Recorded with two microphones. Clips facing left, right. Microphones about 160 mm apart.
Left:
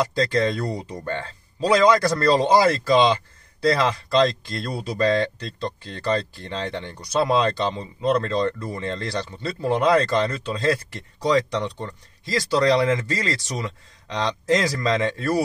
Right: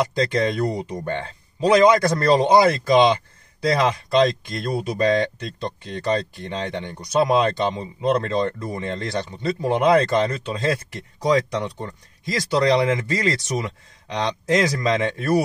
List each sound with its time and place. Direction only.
0.3 s speech: 15° right (ahead or behind)